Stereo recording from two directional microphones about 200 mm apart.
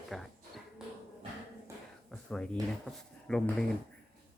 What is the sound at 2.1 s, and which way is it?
Speech, 5° left (ahead or behind).